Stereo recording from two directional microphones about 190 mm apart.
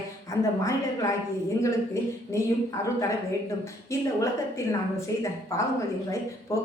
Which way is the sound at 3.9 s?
15° left (ahead or behind).